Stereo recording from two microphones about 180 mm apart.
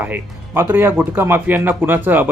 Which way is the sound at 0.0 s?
10° right (ahead or behind).